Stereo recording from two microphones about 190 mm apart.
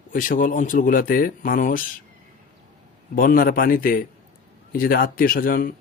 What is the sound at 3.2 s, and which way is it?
Speech, 50° left (ahead or behind).